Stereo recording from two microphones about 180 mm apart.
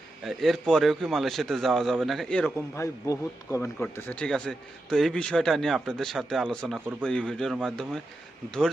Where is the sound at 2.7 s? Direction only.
15° left (ahead or behind).